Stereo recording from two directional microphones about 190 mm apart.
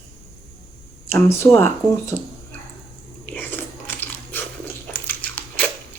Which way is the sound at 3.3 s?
10° left (ahead or behind).